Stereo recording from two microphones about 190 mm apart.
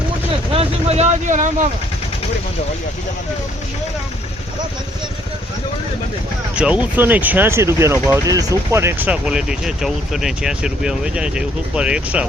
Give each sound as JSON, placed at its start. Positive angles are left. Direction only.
{"t": 0.5, "sound": "vehicle", "side_deg": -30}
{"t": 6.6, "sound": "speech", "side_deg": -5}